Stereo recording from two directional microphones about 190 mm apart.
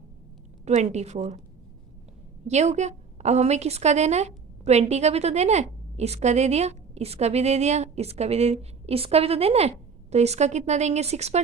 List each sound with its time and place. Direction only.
0.6 s a woman's voice: 35° right (ahead or behind)
2.5 s a woman's voice: 35° right (ahead or behind)